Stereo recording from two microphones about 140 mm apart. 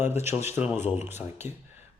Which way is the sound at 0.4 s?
15° right (ahead or behind).